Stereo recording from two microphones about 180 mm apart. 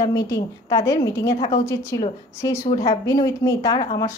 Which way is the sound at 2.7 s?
25° left (ahead or behind).